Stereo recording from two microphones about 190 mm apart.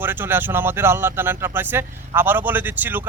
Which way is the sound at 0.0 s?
10° right (ahead or behind).